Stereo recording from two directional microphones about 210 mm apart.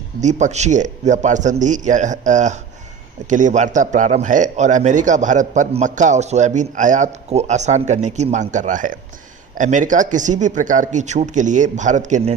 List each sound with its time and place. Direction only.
0.2 s speech: 35° right (ahead or behind)